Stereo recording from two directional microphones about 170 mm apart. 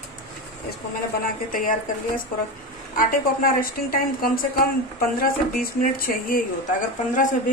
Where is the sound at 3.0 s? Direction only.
55° left (ahead or behind).